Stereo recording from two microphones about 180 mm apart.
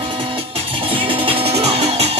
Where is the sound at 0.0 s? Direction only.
30° right (ahead or behind).